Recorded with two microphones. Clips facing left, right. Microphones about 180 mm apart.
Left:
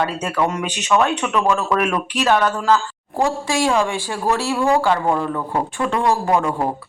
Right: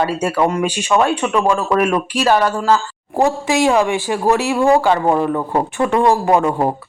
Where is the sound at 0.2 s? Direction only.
10° right (ahead or behind).